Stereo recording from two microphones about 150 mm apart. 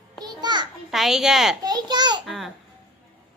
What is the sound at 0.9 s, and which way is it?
Speech, centre (ahead or behind).